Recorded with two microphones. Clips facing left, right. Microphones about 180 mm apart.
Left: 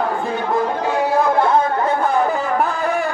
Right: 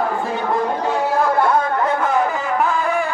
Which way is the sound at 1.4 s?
25° left (ahead or behind).